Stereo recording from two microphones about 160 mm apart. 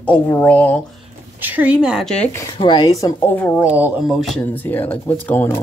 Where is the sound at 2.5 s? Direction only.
30° left (ahead or behind); by 3.5 s 15° left (ahead or behind).